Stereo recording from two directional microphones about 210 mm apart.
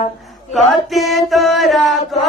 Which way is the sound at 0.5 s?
Centre (ahead or behind).